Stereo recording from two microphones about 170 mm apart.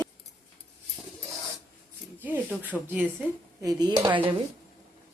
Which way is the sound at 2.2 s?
10° right (ahead or behind).